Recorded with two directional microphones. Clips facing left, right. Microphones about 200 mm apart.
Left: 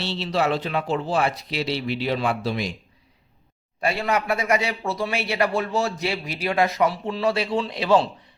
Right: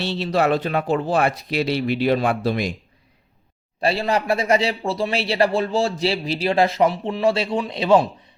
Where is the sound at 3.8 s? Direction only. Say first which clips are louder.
Right 3 dB; 30° right (ahead or behind).